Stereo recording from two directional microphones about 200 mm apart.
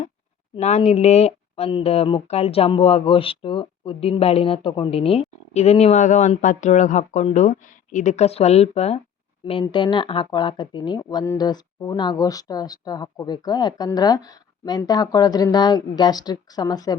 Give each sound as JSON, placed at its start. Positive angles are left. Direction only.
{"t": 0.5, "sound": "speech", "side_deg": 30}